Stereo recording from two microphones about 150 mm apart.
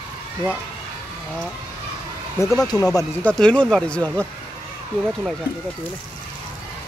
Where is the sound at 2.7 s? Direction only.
25° left (ahead or behind).